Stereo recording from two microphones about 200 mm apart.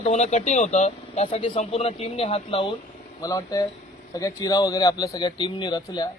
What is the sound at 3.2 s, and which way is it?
Speech, 20° left (ahead or behind).